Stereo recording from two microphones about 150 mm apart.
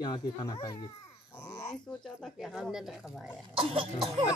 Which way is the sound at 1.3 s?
25° left (ahead or behind).